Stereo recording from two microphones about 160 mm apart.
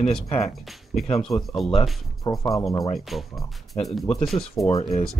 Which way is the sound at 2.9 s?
Centre (ahead or behind).